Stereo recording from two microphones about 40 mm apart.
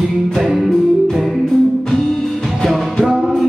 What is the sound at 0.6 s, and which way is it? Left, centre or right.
Music, centre.